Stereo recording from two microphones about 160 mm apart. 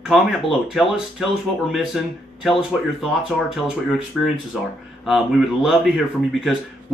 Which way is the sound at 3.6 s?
5° right (ahead or behind).